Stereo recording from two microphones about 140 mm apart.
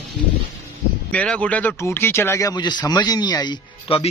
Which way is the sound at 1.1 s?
10° left (ahead or behind).